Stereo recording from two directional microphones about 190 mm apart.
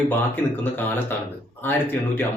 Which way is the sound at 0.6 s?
10° left (ahead or behind).